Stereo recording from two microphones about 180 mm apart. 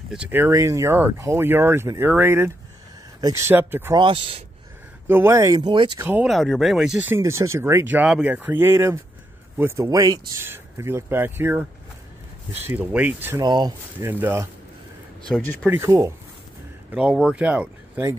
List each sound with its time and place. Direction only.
0.1 s speech: 10° right (ahead or behind)
3.9 s speech: 30° right (ahead or behind)
5.0 s speech: 15° right (ahead or behind)
6.0 s speech: 5° right (ahead or behind)
12.6 s speech: 10° right (ahead or behind)
13.4 s speech: 25° right (ahead or behind)
15.2 s speech: 5° left (ahead or behind)
15.7 s speech: 15° right (ahead or behind)
16.9 s speech: 5° right (ahead or behind)